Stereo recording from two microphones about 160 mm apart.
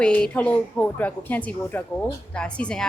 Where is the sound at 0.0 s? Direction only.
5° left (ahead or behind).